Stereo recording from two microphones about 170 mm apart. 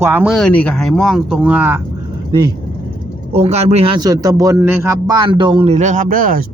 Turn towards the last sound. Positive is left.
turn(degrees=-55)  # may be behind; listen again after turning